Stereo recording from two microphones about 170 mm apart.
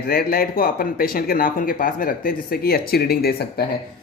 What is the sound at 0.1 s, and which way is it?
Speech, 60° left (ahead or behind).